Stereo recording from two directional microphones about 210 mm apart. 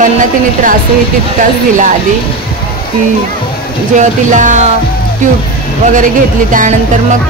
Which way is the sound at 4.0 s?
35° right (ahead or behind).